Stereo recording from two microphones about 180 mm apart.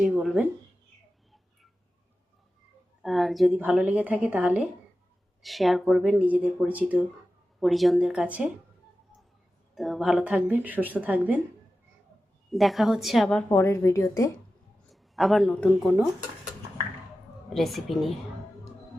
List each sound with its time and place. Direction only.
0.0 s speech: 5° right (ahead or behind)
3.0 s a woman's voice: centre (ahead or behind)
9.7 s a woman's voice: centre (ahead or behind)
12.5 s speech: centre (ahead or behind)
13.5 s speech: 15° left (ahead or behind)
15.1 s speech: centre (ahead or behind)
17.5 s speech: centre (ahead or behind)